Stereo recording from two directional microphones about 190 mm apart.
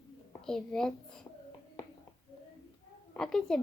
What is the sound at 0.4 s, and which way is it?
Speech, 5° left (ahead or behind).